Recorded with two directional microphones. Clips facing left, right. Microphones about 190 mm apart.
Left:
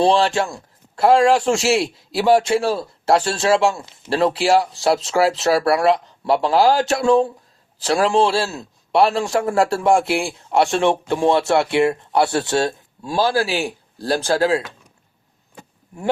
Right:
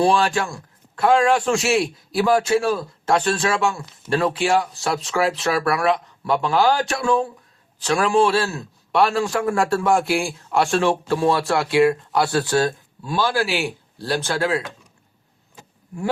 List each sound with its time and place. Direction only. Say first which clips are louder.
0.0 s speech: left 2 dB; 25° left (ahead or behind)